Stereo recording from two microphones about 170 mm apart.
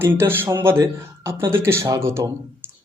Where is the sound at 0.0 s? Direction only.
15° right (ahead or behind).